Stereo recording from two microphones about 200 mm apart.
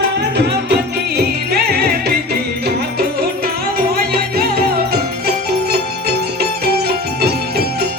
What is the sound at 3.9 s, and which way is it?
Music, 45° right (ahead or behind).